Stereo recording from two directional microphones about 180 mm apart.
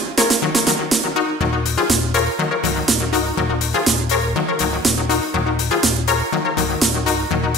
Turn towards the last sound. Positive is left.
turn(degrees=0)  # may be behind; listen again after turning